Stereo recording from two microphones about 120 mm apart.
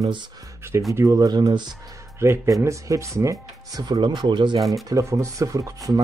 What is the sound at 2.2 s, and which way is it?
Speech, 20° right (ahead or behind).